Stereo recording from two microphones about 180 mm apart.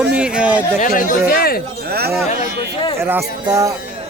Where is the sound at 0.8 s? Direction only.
45° left (ahead or behind).